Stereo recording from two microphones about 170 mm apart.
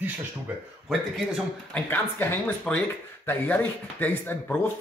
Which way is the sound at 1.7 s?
10° left (ahead or behind).